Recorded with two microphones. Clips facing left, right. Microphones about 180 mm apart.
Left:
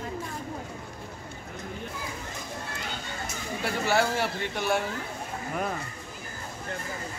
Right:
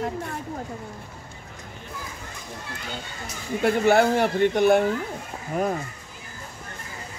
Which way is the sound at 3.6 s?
55° right (ahead or behind).